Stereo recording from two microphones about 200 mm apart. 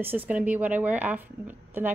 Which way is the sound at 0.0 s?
10° right (ahead or behind).